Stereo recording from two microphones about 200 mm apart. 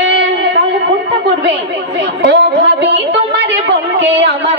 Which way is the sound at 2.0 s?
60° right (ahead or behind).